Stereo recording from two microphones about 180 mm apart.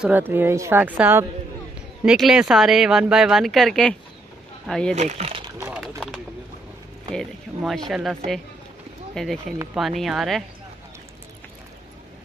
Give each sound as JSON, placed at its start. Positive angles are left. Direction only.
{"t": 0.0, "sound": "a woman's voice", "side_deg": -10}
{"t": 4.9, "sound": "speech", "side_deg": -40}
{"t": 5.6, "sound": "a sound", "side_deg": -5}
{"t": 7.1, "sound": "speech", "side_deg": 5}